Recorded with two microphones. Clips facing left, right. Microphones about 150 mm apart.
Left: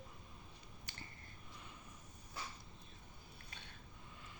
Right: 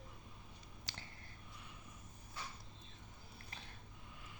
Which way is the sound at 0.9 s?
90° right.